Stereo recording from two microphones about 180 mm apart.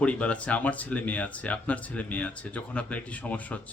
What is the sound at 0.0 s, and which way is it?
Speech, 5° left (ahead or behind).